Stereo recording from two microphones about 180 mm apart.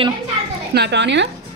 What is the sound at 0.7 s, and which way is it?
Speech, 70° right (ahead or behind).